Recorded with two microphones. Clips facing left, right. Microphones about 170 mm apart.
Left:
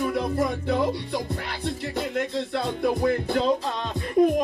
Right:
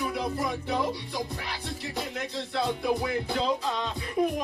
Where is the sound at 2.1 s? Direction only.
55° left (ahead or behind).